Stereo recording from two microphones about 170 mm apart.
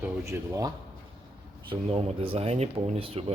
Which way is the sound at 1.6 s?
35° right (ahead or behind).